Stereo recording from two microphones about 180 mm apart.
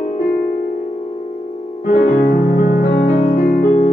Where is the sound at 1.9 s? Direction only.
45° left (ahead or behind).